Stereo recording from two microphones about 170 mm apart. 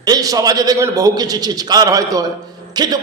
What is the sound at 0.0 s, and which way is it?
A man's voice, 20° right (ahead or behind).